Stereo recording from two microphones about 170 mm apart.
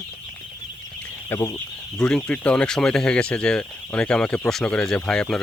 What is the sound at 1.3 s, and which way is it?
Speech, 15° left (ahead or behind).